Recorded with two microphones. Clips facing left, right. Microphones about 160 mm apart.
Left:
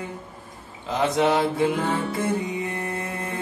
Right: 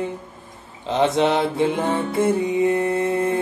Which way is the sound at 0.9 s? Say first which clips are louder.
Right 3 dB; 25° right (ahead or behind).